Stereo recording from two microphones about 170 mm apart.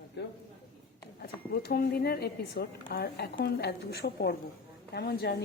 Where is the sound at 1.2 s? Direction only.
65° left (ahead or behind).